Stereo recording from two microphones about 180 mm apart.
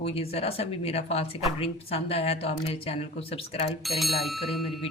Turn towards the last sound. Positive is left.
turn(degrees=0)  # may be behind; listen again after turning